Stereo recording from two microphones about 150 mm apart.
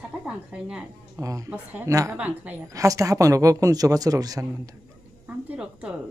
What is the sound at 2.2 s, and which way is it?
Speech, 10° right (ahead or behind).